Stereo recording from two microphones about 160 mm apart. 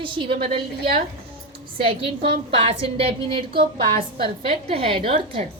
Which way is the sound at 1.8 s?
35° right (ahead or behind).